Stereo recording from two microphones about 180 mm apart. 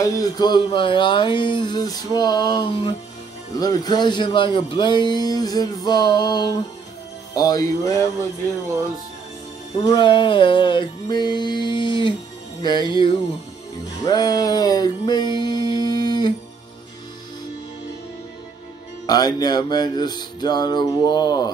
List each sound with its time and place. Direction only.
0.0 s speech: 20° left (ahead or behind)
9.8 s speech: 25° left (ahead or behind)
14.0 s music: 25° left (ahead or behind)
19.0 s speech: 20° left (ahead or behind)